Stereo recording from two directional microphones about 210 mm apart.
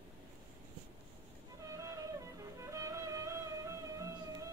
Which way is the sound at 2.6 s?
15° right (ahead or behind).